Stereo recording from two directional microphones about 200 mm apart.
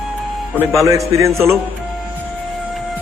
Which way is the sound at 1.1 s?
15° right (ahead or behind).